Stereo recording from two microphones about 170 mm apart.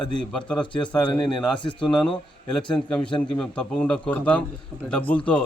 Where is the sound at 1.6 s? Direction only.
30° left (ahead or behind).